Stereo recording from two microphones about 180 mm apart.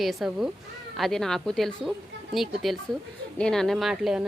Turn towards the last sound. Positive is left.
turn(degrees=-5)  # may be behind; listen again after turning